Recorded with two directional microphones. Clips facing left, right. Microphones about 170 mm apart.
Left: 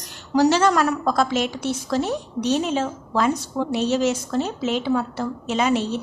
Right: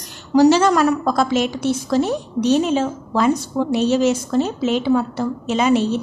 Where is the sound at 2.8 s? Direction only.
15° right (ahead or behind).